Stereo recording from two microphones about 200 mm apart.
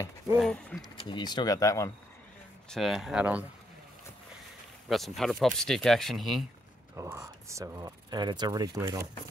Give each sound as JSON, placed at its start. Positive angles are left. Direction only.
{"t": 0.4, "sound": "speech", "side_deg": 5}
{"t": 0.9, "sound": "speech", "side_deg": 25}
{"t": 2.7, "sound": "speech", "side_deg": 0}
{"t": 4.8, "sound": "speech", "side_deg": 0}
{"t": 7.0, "sound": "speech", "side_deg": -15}